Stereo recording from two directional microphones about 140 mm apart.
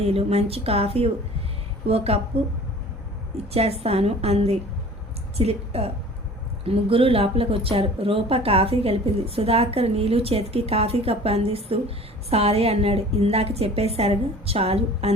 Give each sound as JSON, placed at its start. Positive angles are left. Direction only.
{"t": 0.0, "sound": "speech", "side_deg": -45}
{"t": 3.5, "sound": "speech", "side_deg": -45}